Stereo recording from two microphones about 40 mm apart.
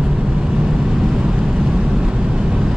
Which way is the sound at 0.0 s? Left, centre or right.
Centre.